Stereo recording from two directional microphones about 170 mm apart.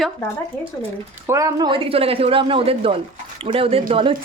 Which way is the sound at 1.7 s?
30° right (ahead or behind).